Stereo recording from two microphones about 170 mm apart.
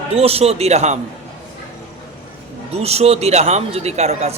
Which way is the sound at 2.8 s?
35° right (ahead or behind).